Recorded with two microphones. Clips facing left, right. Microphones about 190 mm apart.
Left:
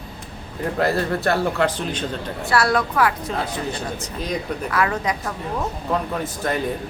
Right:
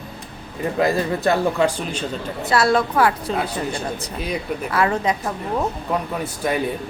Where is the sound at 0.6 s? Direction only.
15° right (ahead or behind).